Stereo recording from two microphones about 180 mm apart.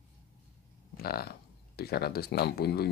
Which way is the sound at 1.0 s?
60° left (ahead or behind).